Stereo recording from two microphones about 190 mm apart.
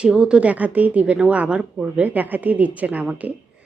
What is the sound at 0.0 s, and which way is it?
Speech, 5° right (ahead or behind).